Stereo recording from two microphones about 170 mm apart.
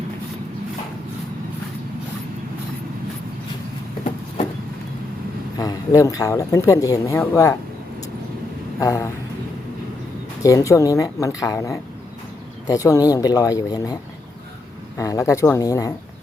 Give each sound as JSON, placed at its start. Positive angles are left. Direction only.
{"t": 5.5, "sound": "speech", "side_deg": 20}
{"t": 8.8, "sound": "speech", "side_deg": 20}
{"t": 10.4, "sound": "speech", "side_deg": 20}